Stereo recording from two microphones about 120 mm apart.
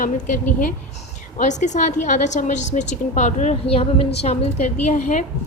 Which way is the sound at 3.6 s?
55° left (ahead or behind).